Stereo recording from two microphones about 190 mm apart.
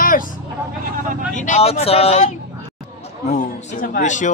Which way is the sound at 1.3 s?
40° left (ahead or behind).